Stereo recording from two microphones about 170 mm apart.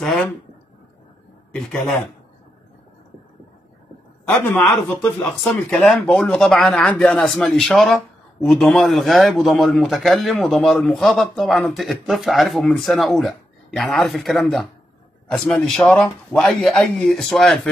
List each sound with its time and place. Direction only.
0.0 s a sound: centre (ahead or behind)
1.5 s speech: 5° left (ahead or behind)
4.3 s a man's voice: 10° left (ahead or behind)